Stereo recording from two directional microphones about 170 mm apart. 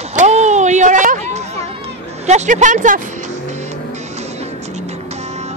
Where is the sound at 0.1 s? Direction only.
45° right (ahead or behind).